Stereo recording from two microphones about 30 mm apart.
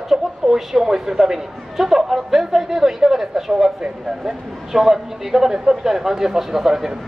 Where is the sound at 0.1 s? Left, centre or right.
Centre.